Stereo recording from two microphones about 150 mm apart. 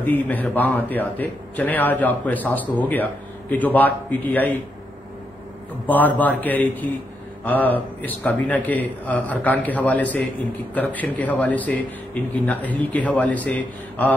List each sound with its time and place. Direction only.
0.0 s speech: 10° left (ahead or behind)
5.9 s speech: 10° left (ahead or behind)